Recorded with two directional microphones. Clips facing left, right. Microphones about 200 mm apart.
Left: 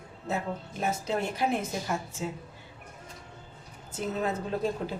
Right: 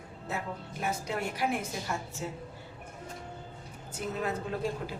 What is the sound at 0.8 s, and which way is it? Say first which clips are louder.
A woman's voice: left 3 dB; 25° left (ahead or behind).